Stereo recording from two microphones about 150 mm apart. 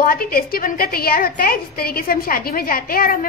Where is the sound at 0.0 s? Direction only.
75° left (ahead or behind).